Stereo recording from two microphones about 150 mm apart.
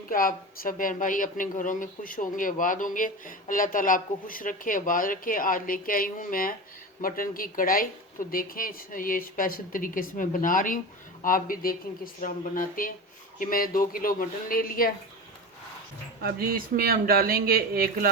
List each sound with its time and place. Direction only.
0.1 s a woman's voice: 70° left (ahead or behind)
16.2 s speech: 80° right